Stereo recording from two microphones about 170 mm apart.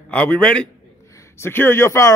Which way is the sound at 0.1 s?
10° left (ahead or behind).